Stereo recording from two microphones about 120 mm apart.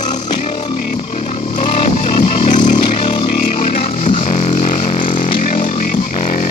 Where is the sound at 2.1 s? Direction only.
70° left (ahead or behind); by 2.8 s 90° left.